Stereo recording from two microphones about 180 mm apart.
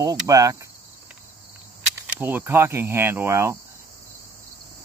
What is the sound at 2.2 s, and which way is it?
Speech, 10° right (ahead or behind).